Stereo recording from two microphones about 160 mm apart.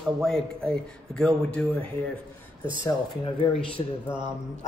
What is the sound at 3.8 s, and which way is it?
Speech, 30° left (ahead or behind).